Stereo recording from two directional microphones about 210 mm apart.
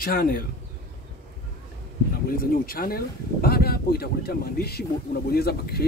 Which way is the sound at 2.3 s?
45° left (ahead or behind).